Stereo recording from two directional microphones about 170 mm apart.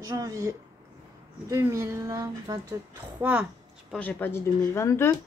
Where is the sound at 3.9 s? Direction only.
10° left (ahead or behind).